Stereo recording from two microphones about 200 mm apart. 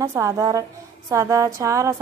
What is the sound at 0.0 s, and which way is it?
A woman's voice, 10° right (ahead or behind).